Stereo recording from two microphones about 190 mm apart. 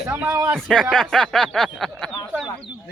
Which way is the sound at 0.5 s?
5° left (ahead or behind).